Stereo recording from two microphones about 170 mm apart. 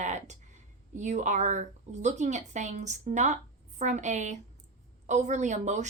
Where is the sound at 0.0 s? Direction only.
45° right (ahead or behind).